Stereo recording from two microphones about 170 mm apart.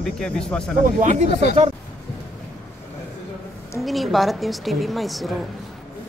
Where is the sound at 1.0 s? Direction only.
45° right (ahead or behind).